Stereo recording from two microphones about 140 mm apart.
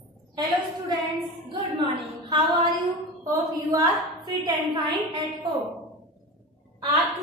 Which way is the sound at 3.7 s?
30° right (ahead or behind).